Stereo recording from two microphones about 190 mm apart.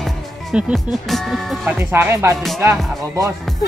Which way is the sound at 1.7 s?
10° right (ahead or behind).